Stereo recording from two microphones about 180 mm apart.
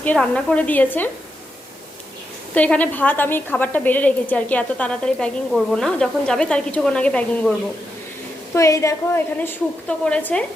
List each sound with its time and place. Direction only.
0.0 s a woman's voice: 10° left (ahead or behind)
2.6 s a woman's voice: 10° left (ahead or behind)
8.5 s a woman's voice: 15° left (ahead or behind)